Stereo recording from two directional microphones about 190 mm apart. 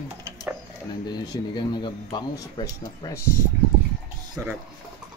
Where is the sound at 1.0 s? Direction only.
20° left (ahead or behind).